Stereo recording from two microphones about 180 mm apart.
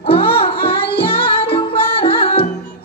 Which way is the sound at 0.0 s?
30° left (ahead or behind).